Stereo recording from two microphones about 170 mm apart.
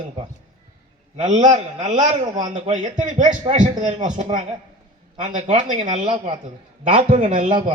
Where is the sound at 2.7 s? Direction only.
45° right (ahead or behind).